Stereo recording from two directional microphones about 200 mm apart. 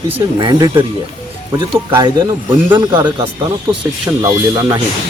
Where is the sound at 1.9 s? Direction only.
20° right (ahead or behind).